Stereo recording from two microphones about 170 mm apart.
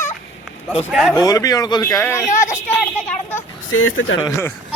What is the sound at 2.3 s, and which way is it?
Speech, 50° left (ahead or behind).